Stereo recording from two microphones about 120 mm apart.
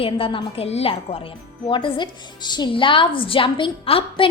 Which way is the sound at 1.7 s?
40° left (ahead or behind).